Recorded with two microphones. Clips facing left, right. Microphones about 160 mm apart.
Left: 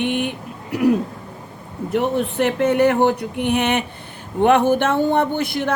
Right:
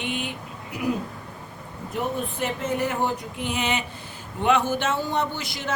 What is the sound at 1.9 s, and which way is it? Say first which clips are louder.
Speech: left 8 dB; 70° left (ahead or behind).